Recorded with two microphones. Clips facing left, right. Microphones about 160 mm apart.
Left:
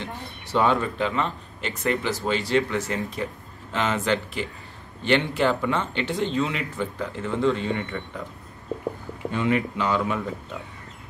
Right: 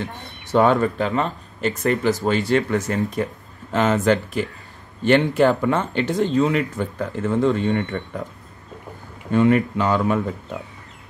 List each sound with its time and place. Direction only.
0.0 s speech: 50° right (ahead or behind)
9.3 s speech: 50° right (ahead or behind)